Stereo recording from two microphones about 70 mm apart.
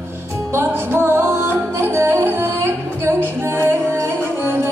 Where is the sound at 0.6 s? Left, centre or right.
Right.